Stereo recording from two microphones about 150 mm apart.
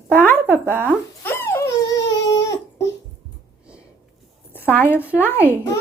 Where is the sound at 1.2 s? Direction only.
15° left (ahead or behind).